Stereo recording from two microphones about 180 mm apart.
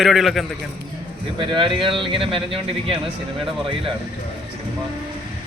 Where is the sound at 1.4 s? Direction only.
25° right (ahead or behind).